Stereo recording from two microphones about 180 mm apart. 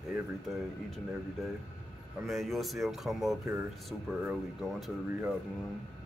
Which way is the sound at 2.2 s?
Centre (ahead or behind).